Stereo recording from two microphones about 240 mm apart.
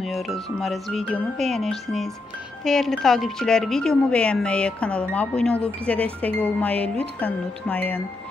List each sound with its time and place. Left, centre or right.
0.0 s speech: centre